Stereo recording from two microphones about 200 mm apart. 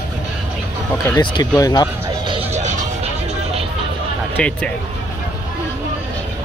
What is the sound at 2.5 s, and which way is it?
Music, 35° right (ahead or behind).